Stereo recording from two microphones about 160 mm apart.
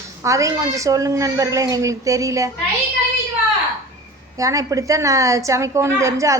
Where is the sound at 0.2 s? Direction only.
20° right (ahead or behind).